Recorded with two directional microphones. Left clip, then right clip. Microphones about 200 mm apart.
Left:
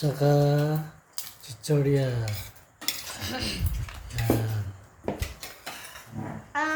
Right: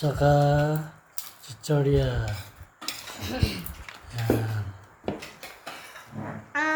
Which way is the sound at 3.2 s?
20° right (ahead or behind).